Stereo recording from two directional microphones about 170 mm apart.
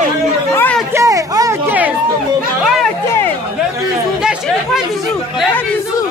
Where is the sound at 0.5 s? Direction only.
10° left (ahead or behind).